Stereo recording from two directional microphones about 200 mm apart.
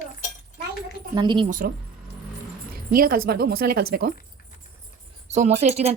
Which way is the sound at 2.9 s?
45° right (ahead or behind).